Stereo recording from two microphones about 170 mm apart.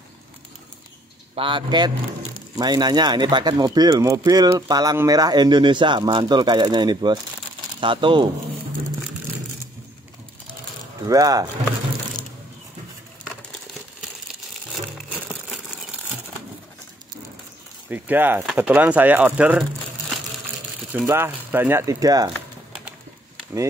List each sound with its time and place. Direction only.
1.3 s speech: 30° right (ahead or behind)
11.1 s speech: 20° right (ahead or behind)
17.8 s speech: 10° right (ahead or behind)
20.9 s speech: 10° right (ahead or behind)